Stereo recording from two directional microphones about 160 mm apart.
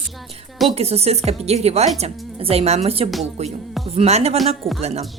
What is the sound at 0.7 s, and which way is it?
Speech, 40° right (ahead or behind).